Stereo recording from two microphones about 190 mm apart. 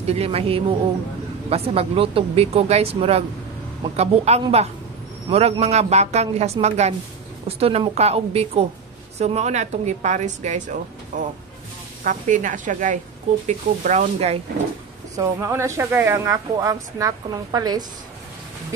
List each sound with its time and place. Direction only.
0.0 s a woman's voice: 30° right (ahead or behind)
15.1 s speech: 15° right (ahead or behind)